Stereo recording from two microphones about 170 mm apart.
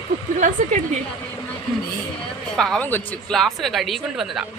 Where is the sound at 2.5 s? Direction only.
5° left (ahead or behind).